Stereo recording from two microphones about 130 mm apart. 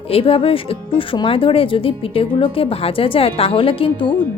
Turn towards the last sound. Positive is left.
turn(degrees=40)  # may be behind; listen again after turning